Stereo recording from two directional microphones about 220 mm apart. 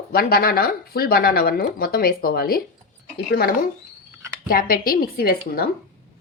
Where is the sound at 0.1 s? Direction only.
45° left (ahead or behind).